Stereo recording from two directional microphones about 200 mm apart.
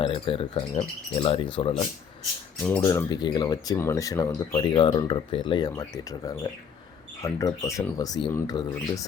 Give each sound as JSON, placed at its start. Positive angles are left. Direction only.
{"t": 0.0, "sound": "speech", "side_deg": 25}